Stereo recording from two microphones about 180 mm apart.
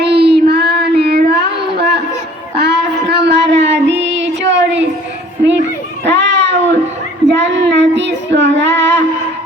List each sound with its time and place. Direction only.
0.0 s child singing: 65° right (ahead or behind); by 4.9 s 90° right
6.1 s a sound: 80° right
7.3 s child singing: 80° right